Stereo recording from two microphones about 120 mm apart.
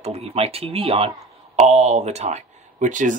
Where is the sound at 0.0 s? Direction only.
60° right (ahead or behind).